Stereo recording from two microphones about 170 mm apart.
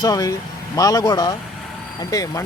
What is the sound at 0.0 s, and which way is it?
Speech, 20° left (ahead or behind).